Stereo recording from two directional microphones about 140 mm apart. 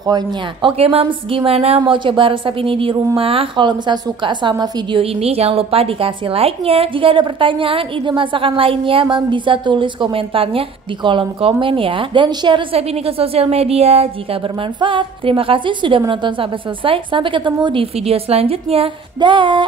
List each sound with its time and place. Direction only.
0.0 s a woman's voice: 30° right (ahead or behind)
5.0 s a woman's voice: 45° right (ahead or behind)